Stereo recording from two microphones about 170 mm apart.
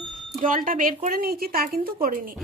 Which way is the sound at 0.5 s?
55° right (ahead or behind).